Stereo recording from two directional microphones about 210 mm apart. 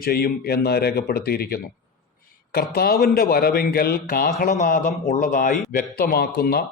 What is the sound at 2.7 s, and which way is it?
A man's voice, 45° left (ahead or behind).